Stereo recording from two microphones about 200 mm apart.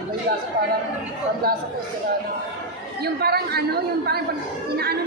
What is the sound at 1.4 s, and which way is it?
Speech, 50° right (ahead or behind).